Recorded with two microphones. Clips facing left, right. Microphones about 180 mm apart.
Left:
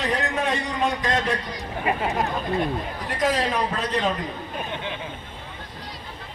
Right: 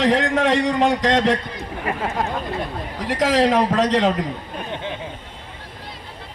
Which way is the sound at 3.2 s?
90° right.